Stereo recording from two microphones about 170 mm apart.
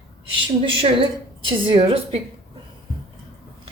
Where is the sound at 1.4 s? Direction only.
30° right (ahead or behind).